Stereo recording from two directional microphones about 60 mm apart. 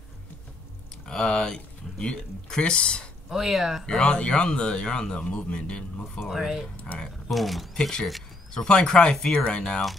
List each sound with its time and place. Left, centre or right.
1.0 s speech: centre
3.3 s speech: centre
3.8 s a man's voice: centre
6.1 s speech: centre